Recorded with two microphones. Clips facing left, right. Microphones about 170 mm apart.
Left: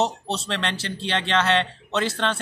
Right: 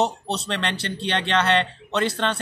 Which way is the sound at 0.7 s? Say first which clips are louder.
Right 1 dB; 60° right (ahead or behind).